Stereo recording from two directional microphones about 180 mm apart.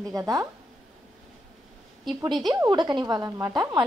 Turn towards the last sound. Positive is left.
turn(degrees=-20)  # may be behind; listen again after turning